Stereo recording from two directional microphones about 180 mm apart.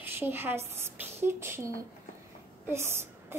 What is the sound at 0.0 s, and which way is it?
A woman's voice, 10° right (ahead or behind).